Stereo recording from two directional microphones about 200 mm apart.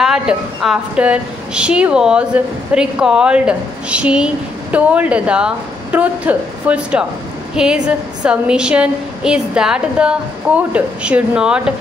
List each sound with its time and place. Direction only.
0.0 s a woman's voice: centre (ahead or behind)